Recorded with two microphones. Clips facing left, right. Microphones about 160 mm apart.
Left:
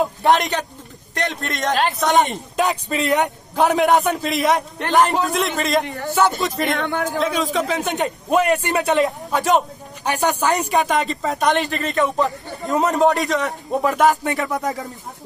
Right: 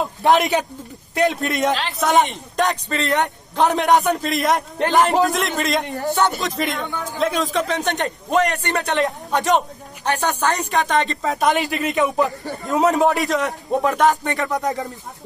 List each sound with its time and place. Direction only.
0.2 s a man's voice: centre (ahead or behind)
6.7 s a man's voice: 75° left (ahead or behind)
7.2 s a man's voice: centre (ahead or behind)
12.6 s a man's voice: centre (ahead or behind)